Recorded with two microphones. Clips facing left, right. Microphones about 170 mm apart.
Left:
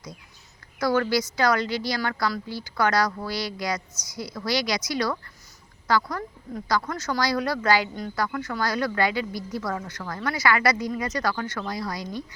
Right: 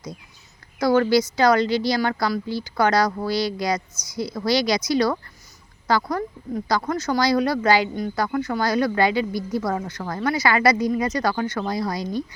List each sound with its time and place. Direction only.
0.8 s speech: 25° right (ahead or behind)